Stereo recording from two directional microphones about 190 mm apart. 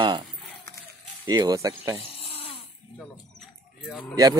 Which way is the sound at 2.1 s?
30° left (ahead or behind).